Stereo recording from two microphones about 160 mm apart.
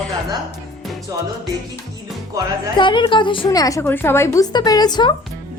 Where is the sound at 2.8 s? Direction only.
30° left (ahead or behind).